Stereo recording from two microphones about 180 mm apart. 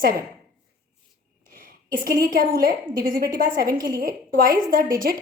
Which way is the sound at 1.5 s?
50° right (ahead or behind).